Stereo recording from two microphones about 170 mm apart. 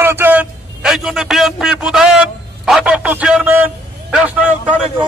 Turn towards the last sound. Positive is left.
turn(degrees=-10)  # may be behind; listen again after turning